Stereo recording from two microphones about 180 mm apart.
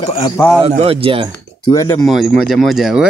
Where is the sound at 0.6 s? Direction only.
35° right (ahead or behind).